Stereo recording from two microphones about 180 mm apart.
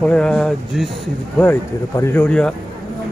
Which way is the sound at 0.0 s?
5° left (ahead or behind).